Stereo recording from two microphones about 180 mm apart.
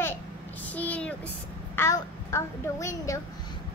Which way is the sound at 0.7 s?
10° left (ahead or behind).